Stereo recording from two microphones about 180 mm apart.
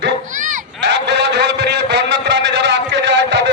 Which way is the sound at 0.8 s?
75° right (ahead or behind).